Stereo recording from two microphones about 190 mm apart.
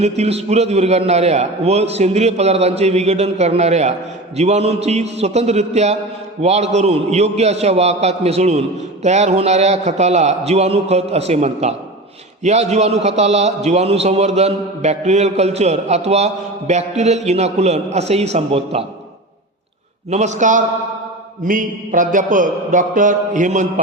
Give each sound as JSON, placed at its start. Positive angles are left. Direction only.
{"t": 0.0, "sound": "a man's voice", "side_deg": -35}
{"t": 20.1, "sound": "a man's voice", "side_deg": -35}
{"t": 21.4, "sound": "a sound", "side_deg": -45}